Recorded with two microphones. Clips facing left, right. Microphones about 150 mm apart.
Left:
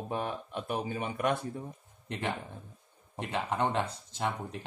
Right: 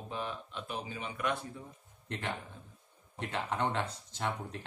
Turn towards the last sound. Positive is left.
turn(degrees=15)  # may be behind; listen again after turning